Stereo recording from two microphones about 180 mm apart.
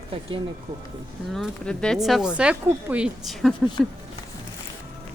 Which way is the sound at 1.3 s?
5° left (ahead or behind).